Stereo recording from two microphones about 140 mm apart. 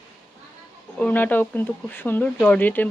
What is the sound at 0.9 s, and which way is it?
Speech, 10° left (ahead or behind).